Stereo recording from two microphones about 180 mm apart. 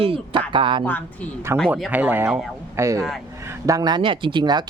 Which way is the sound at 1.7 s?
10° right (ahead or behind).